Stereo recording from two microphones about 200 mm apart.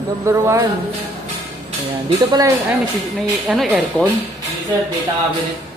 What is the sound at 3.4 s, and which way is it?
Speech, centre (ahead or behind).